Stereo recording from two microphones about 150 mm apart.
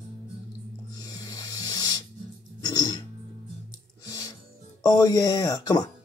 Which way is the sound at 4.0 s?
20° left (ahead or behind).